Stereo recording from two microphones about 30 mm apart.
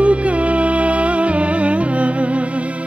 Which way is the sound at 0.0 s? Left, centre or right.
Right.